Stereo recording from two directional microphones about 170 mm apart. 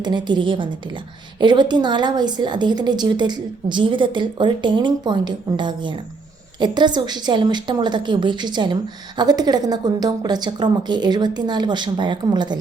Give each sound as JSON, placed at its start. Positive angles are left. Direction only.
{"t": 0.0, "sound": "a woman's voice", "side_deg": -25}